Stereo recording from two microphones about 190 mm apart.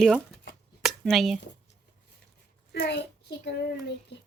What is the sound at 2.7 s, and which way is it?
A child's voice, 60° left (ahead or behind).